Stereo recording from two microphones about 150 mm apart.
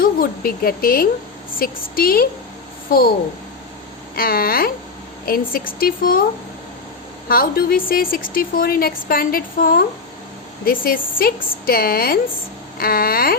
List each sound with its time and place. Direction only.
0.0 s a woman's voice: 85° left
4.1 s a woman's voice: 85° left
7.3 s a woman's voice: 80° left